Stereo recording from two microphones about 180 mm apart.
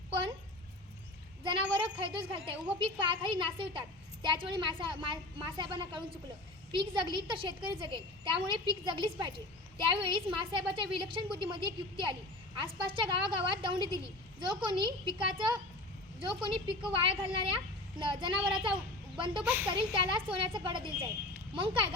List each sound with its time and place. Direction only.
0.1 s a sound: 30° right (ahead or behind)
1.5 s a child's voice: 30° right (ahead or behind)
19.4 s speech: 10° right (ahead or behind)
19.9 s a child's voice: 30° right (ahead or behind)